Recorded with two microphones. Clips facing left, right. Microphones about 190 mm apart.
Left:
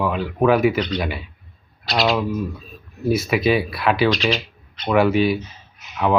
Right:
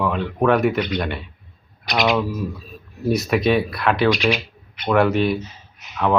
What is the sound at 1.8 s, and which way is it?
Speech, 20° right (ahead or behind).